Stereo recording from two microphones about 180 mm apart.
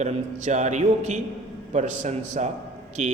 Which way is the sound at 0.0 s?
40° right (ahead or behind).